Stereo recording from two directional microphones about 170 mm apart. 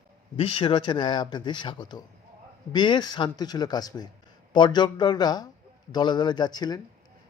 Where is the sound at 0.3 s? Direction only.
30° left (ahead or behind).